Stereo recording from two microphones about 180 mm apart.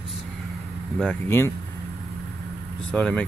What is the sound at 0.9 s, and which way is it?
Speech, 10° left (ahead or behind).